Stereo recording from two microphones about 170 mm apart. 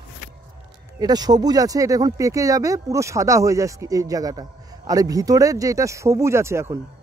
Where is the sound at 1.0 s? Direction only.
25° right (ahead or behind).